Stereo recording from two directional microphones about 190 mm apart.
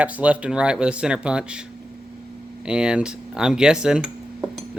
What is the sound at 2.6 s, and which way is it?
Speech, 5° right (ahead or behind).